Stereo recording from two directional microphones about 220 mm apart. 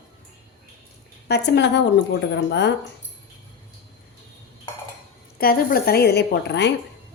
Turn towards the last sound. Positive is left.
turn(degrees=50)  # may be behind; listen again after turning